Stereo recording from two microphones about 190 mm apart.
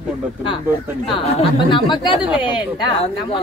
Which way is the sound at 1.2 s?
30° left (ahead or behind).